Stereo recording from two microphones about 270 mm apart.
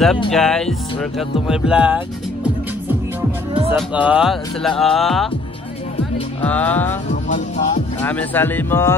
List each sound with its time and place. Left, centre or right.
0.3 s music: centre
2.4 s speech: centre
6.4 s music: centre
7.1 s speech: left
8.0 s speech: centre